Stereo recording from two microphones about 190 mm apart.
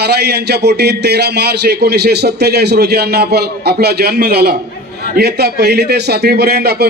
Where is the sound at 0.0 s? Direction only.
60° right (ahead or behind).